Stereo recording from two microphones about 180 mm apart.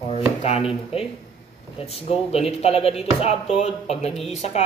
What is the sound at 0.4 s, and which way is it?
Speech, 35° left (ahead or behind).